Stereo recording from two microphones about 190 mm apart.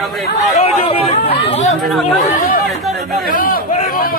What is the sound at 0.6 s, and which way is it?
Chatter, 35° left (ahead or behind).